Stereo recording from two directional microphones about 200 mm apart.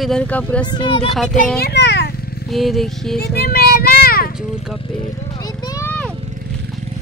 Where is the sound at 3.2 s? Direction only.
50° left (ahead or behind).